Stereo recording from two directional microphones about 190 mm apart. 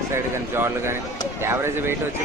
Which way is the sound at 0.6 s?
15° right (ahead or behind).